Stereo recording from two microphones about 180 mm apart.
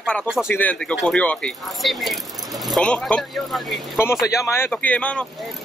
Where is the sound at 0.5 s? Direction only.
10° left (ahead or behind).